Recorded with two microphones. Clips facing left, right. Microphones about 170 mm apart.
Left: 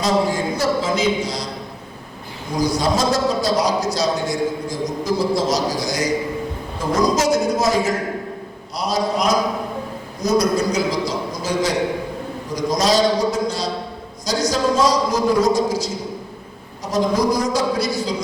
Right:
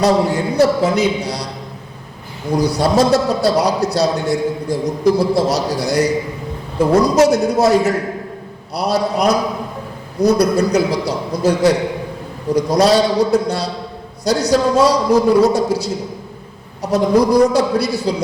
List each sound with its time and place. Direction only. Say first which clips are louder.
0.0 s a man's voice: right 4 dB; 65° right (ahead or behind)
2.6 s a man's voice: right 4 dB; 65° right (ahead or behind)
16.8 s a man's voice: right 5 dB; 60° right (ahead or behind)